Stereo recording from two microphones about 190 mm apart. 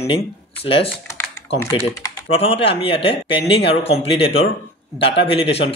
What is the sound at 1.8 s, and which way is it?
Speech, 30° left (ahead or behind).